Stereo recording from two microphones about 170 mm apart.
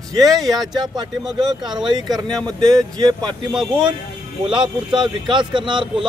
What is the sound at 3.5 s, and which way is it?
Speech, 5° right (ahead or behind).